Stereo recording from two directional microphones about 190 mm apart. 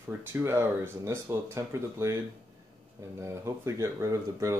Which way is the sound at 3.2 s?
15° right (ahead or behind).